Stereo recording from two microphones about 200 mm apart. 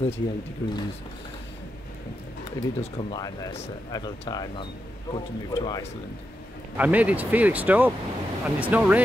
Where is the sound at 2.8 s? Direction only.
20° left (ahead or behind).